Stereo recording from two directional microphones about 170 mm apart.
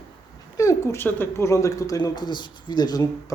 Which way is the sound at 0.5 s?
20° left (ahead or behind).